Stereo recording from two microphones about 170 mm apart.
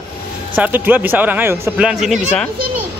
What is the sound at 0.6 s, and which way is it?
Speech, 10° right (ahead or behind).